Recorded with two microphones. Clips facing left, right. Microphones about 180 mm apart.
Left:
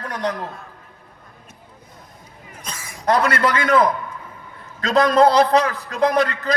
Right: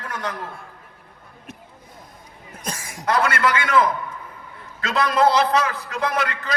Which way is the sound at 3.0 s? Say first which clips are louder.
Left 2 dB; 35° left (ahead or behind).